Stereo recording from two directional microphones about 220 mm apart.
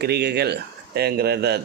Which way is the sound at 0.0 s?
50° right (ahead or behind).